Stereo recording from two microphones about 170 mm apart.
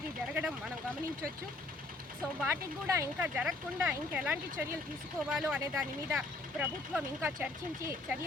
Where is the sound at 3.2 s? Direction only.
5° right (ahead or behind).